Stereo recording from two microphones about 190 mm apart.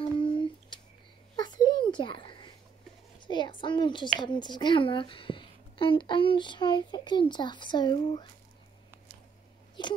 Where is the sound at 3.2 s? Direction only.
25° left (ahead or behind).